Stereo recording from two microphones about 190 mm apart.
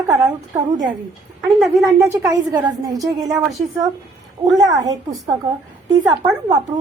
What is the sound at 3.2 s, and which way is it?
Speech, centre (ahead or behind).